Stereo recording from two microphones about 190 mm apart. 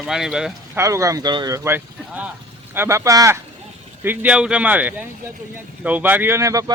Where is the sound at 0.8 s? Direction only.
15° right (ahead or behind).